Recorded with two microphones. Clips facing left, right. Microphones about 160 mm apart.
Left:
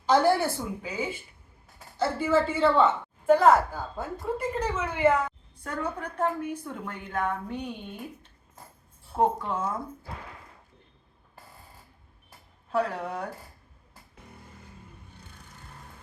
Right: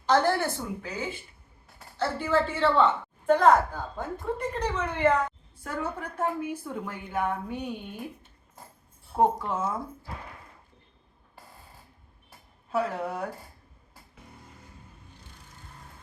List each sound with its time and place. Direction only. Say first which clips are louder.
0.1 s a woman's voice: left 2 dB; 10° left (ahead or behind)
5.6 s a woman's voice: even; 5° right (ahead or behind)
9.1 s a woman's voice: right 1 dB; 5° right (ahead or behind)
12.7 s a woman's voice: even; 5° right (ahead or behind)